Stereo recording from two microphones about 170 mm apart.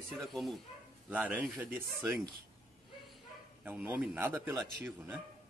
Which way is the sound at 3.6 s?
10° right (ahead or behind).